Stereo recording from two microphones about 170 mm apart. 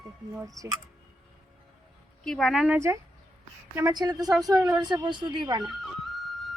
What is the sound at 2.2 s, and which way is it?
Speech, centre (ahead or behind).